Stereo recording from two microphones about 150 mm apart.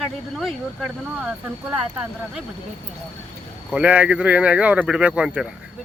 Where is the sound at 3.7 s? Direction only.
10° right (ahead or behind).